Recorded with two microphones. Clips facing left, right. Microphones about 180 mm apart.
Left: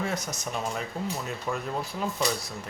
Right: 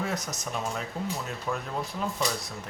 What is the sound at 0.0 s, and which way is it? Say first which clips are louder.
Speech: left 1 dB; centre (ahead or behind).